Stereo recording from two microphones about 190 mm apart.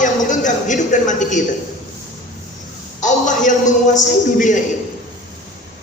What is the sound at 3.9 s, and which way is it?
Speech, 40° left (ahead or behind).